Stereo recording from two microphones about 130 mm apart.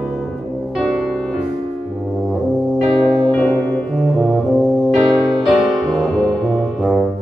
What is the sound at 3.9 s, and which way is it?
Brass instrument, centre (ahead or behind).